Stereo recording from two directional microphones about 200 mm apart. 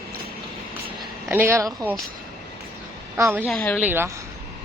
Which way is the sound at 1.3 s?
10° right (ahead or behind).